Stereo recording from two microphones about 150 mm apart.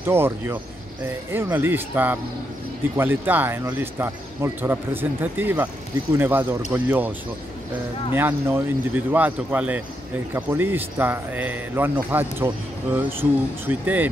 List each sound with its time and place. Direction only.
0.0 s speech: 15° right (ahead or behind)